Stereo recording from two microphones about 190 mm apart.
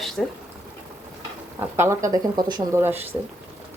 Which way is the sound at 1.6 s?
10° right (ahead or behind).